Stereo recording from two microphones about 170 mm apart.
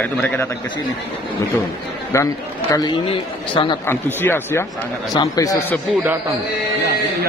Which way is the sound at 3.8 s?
15° left (ahead or behind).